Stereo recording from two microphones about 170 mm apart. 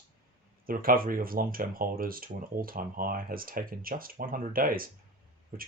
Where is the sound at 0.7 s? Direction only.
55° right (ahead or behind).